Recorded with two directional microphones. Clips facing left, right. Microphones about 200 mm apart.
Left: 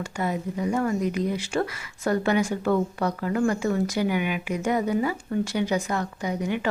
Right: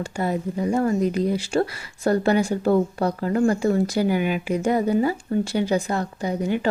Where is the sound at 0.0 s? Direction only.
35° right (ahead or behind).